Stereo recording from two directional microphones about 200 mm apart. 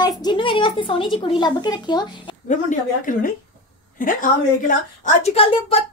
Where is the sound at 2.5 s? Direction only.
40° left (ahead or behind).